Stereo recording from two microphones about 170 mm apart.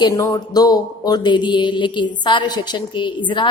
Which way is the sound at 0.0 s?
20° left (ahead or behind).